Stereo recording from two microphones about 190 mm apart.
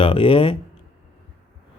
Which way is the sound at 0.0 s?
25° left (ahead or behind).